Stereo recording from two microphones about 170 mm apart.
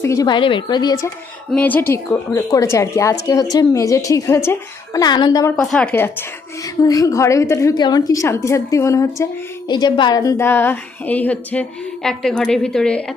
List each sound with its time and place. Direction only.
0.0 s speech: 20° left (ahead or behind)
1.5 s a woman's voice: 10° left (ahead or behind)
5.5 s a woman's voice: 5° left (ahead or behind)